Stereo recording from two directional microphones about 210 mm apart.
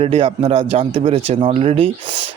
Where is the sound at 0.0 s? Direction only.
30° right (ahead or behind).